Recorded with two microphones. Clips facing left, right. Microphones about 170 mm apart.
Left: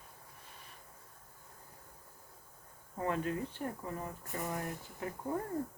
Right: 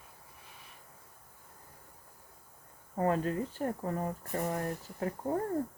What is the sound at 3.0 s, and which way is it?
Speech, 40° right (ahead or behind).